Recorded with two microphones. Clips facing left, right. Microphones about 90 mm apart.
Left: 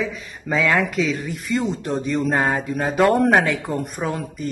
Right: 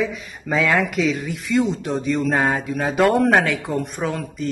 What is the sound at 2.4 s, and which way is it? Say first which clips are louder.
Mantra: even; 20° left (ahead or behind).